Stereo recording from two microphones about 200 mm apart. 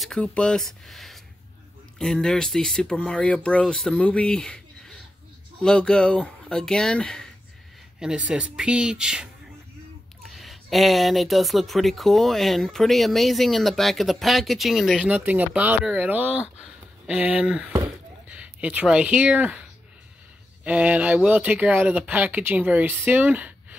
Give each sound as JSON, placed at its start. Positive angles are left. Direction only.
{"t": 0.0, "sound": "speech", "side_deg": 5}
{"t": 20.6, "sound": "speech", "side_deg": -5}